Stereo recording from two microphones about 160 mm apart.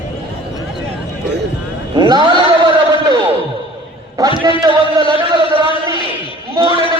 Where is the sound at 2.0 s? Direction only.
25° right (ahead or behind).